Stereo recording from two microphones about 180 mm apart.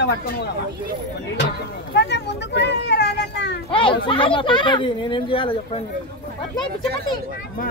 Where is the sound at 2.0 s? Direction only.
70° left (ahead or behind).